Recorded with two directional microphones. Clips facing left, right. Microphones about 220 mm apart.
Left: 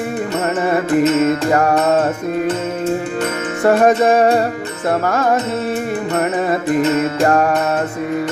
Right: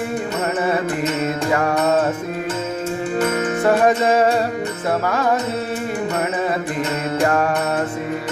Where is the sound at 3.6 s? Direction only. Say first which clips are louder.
Left 5 dB; 45° left (ahead or behind).